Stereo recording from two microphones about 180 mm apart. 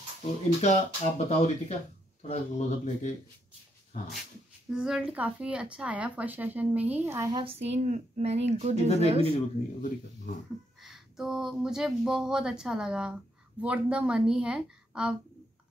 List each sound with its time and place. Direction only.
0.6 s speech: 40° left (ahead or behind)
4.6 s speech: 5° right (ahead or behind)
7.6 s speech: 40° right (ahead or behind)
9.3 s speech: 45° left (ahead or behind)
10.8 s speech: centre (ahead or behind)